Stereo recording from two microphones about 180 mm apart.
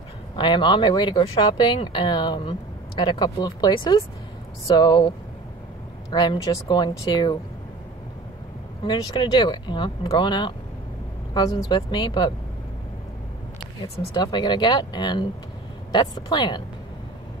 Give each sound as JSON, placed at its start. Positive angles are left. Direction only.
{"t": 0.4, "sound": "speech", "side_deg": 25}
{"t": 8.8, "sound": "speech", "side_deg": 25}
{"t": 14.1, "sound": "speech", "side_deg": 25}